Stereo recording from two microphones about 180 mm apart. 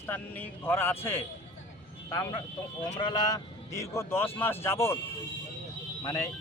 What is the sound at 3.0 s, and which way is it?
Speech, 20° left (ahead or behind).